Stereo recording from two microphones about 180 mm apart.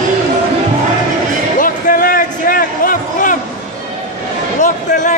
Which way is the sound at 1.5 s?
50° left (ahead or behind).